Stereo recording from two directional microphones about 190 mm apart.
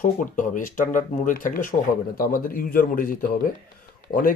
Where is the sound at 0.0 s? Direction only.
45° left (ahead or behind).